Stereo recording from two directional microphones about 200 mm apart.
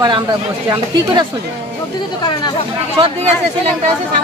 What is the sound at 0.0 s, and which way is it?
Speech, 20° right (ahead or behind).